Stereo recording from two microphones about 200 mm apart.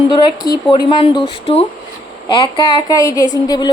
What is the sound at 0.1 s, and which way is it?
A woman's voice, 20° left (ahead or behind).